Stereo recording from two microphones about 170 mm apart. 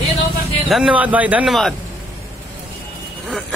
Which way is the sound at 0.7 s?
5° right (ahead or behind).